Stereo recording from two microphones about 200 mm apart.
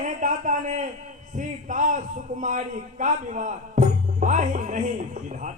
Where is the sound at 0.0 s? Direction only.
40° right (ahead or behind).